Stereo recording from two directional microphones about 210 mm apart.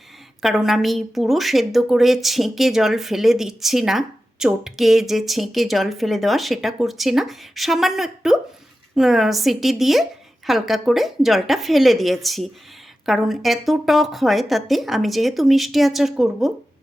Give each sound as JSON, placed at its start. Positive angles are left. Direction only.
{"t": 0.4, "sound": "a woman's voice", "side_deg": 0}